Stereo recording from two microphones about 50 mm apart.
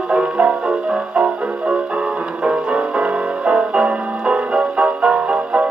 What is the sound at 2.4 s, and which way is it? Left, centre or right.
Music, right.